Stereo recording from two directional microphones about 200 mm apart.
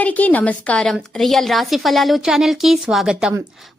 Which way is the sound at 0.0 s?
5° left (ahead or behind).